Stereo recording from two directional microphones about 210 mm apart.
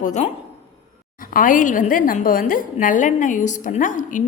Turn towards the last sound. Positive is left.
turn(degrees=40)  # may be behind; listen again after turning